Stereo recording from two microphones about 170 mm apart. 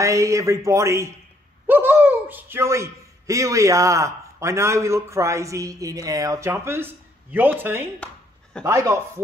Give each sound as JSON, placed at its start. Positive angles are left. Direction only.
{"t": 0.0, "sound": "speech", "side_deg": -20}